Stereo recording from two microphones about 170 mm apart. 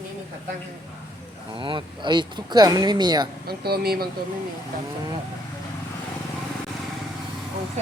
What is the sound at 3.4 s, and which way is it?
Speech, 65° right (ahead or behind).